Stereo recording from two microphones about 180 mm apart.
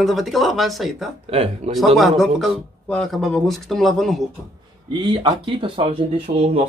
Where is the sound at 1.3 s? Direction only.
35° right (ahead or behind).